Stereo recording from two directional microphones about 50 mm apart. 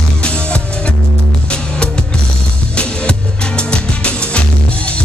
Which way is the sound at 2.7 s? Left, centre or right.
Centre.